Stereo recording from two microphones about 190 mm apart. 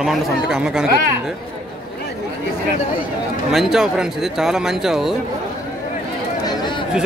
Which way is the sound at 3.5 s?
Centre (ahead or behind).